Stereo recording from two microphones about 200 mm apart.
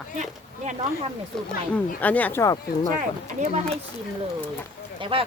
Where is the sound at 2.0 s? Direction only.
10° left (ahead or behind).